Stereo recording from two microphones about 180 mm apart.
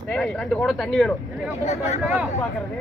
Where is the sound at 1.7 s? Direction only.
35° left (ahead or behind).